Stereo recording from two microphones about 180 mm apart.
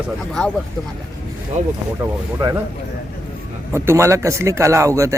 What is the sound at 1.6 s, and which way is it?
Speech, 40° right (ahead or behind).